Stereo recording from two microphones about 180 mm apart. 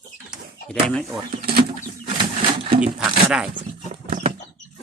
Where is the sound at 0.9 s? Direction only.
5° left (ahead or behind).